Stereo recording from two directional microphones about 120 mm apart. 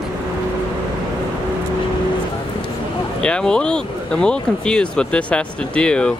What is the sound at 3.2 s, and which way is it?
Speech, 10° left (ahead or behind).